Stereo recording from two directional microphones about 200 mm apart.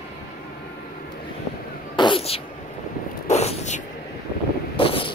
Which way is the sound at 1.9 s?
25° left (ahead or behind).